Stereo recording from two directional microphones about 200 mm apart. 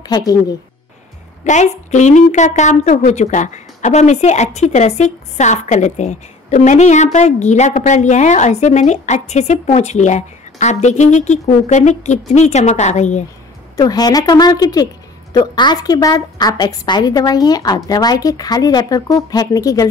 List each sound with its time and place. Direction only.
0.0 s a woman's voice: 20° left (ahead or behind)
1.4 s a woman's voice: 35° left (ahead or behind)
13.7 s a woman's voice: 20° left (ahead or behind)